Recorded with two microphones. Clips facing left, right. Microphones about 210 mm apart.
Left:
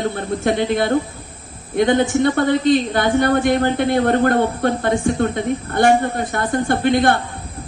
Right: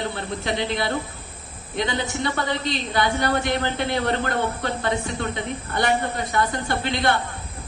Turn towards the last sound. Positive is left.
turn(degrees=50)  # may be behind; listen again after turning